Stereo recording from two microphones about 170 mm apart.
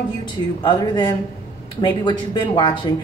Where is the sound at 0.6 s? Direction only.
25° left (ahead or behind).